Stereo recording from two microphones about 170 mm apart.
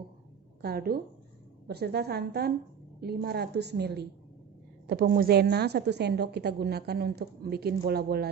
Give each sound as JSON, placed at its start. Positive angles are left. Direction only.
{"t": 0.6, "sound": "a woman's voice", "side_deg": -65}
{"t": 4.9, "sound": "a woman's voice", "side_deg": -60}